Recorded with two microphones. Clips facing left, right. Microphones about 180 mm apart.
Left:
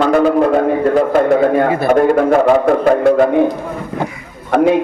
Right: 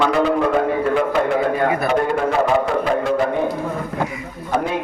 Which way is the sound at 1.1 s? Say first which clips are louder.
Left 7 dB; 45° left (ahead or behind).